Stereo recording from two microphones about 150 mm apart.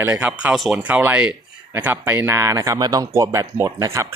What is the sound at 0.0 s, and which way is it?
Speech, 10° right (ahead or behind).